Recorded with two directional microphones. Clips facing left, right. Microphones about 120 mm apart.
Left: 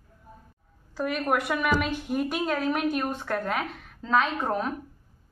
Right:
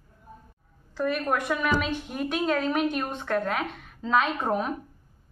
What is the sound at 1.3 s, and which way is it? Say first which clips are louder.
A woman's voice: left 4 dB; 10° left (ahead or behind).